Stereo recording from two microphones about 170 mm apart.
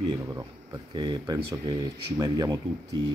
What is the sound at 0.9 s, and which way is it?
Speech, 25° right (ahead or behind).